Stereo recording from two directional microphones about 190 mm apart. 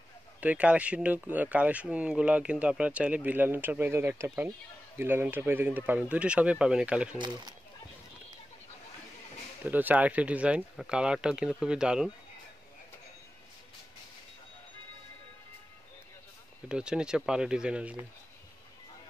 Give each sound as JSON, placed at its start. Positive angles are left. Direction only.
{"t": 0.4, "sound": "speech", "side_deg": -10}
{"t": 7.2, "sound": "speech", "side_deg": -25}
{"t": 9.7, "sound": "speech", "side_deg": -10}
{"t": 16.6, "sound": "speech", "side_deg": -5}